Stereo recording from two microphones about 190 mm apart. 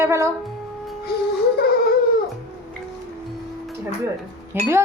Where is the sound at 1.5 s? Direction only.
55° left (ahead or behind).